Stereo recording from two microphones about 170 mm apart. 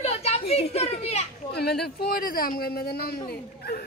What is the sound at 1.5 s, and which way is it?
Speech, 70° left (ahead or behind).